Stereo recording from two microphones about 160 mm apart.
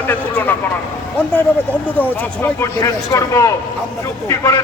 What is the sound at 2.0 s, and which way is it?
A man's voice, 15° left (ahead or behind).